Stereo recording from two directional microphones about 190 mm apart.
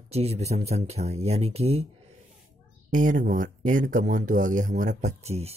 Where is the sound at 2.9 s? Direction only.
45° right (ahead or behind).